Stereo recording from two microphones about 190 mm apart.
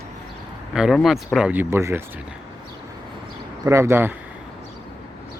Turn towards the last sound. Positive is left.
turn(degrees=-10)  # may be behind; listen again after turning